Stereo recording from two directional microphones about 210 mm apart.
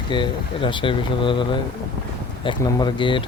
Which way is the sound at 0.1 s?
25° left (ahead or behind).